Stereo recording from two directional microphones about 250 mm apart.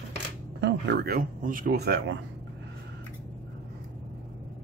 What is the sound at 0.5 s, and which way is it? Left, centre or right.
Speech, right.